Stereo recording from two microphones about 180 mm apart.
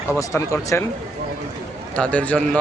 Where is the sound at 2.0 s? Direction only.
5° left (ahead or behind).